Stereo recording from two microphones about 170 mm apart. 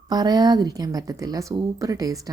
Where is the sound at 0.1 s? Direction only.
25° right (ahead or behind).